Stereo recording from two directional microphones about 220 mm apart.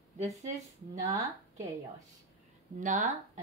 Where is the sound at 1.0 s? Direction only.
15° right (ahead or behind).